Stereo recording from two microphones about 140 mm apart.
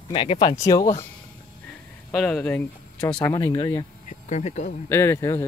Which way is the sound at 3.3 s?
30° left (ahead or behind).